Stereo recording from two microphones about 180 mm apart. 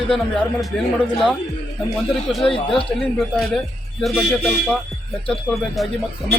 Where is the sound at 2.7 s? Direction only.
Centre (ahead or behind).